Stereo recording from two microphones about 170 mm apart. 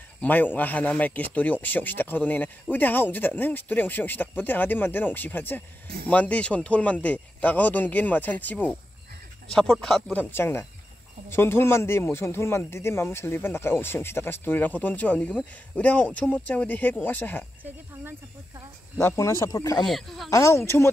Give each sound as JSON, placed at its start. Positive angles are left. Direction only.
{"t": 0.2, "sound": "a man's voice", "side_deg": 10}
{"t": 10.3, "sound": "a man's voice", "side_deg": 15}
{"t": 19.4, "sound": "speech", "side_deg": 20}
{"t": 19.8, "sound": "speech", "side_deg": 0}
{"t": 20.2, "sound": "a man's voice", "side_deg": 15}